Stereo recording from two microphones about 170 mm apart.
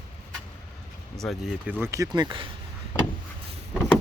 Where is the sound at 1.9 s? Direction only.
20° right (ahead or behind).